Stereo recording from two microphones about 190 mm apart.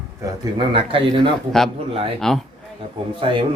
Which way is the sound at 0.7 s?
25° right (ahead or behind).